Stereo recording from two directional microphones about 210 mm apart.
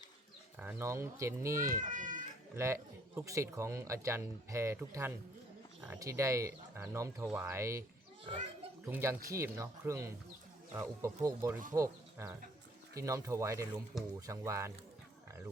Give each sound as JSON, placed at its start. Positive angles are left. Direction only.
{"t": 0.6, "sound": "speech", "side_deg": -10}
{"t": 1.7, "sound": "a child's voice", "side_deg": -40}
{"t": 2.6, "sound": "speech", "side_deg": -15}
{"t": 8.9, "sound": "speech", "side_deg": -15}